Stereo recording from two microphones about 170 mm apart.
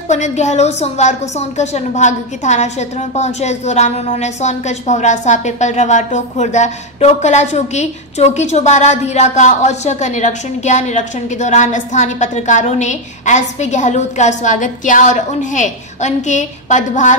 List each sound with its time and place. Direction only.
0.1 s a woman's voice: 45° left (ahead or behind)